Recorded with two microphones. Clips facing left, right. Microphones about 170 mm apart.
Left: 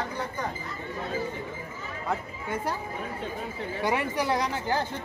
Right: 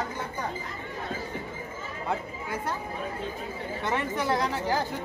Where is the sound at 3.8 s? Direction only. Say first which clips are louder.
Left 1 dB; 5° left (ahead or behind).